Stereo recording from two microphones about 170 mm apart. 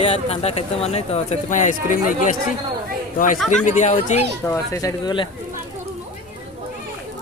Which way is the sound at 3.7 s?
45° left (ahead or behind).